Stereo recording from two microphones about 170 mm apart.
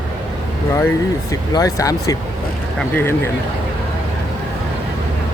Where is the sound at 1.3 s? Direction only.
20° left (ahead or behind).